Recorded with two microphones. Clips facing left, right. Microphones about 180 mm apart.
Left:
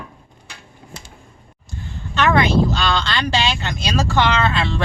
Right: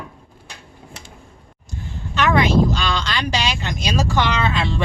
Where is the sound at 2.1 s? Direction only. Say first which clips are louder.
Even; 10° right (ahead or behind).